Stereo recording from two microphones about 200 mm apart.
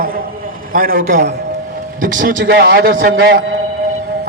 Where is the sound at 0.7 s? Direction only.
45° right (ahead or behind).